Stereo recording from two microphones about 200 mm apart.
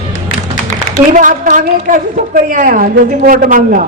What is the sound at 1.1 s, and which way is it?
A woman's voice, 40° right (ahead or behind).